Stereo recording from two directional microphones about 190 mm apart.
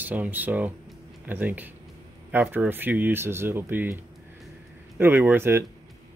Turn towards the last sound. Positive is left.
turn(degrees=-10)  # may be behind; listen again after turning